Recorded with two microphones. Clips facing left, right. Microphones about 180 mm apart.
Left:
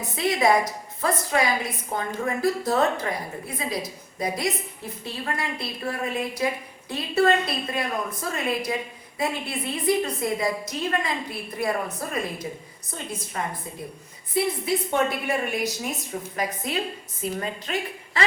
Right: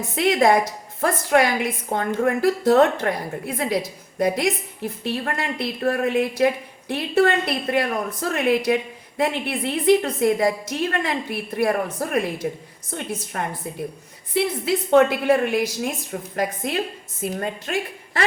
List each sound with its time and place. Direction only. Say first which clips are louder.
0.2 s a woman's voice: right 4 dB; 55° right (ahead or behind); by 3.5 s 75° right (ahead or behind)
3.5 s a woman's voice: right 7 dB; 60° right (ahead or behind)
14.3 s a woman's voice: right 2 dB; 75° right (ahead or behind)
16.3 s a woman's voice: right 5 dB; 55° right (ahead or behind)